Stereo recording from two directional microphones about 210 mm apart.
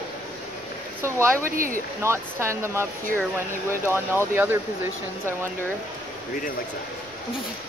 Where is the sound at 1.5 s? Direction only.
40° right (ahead or behind).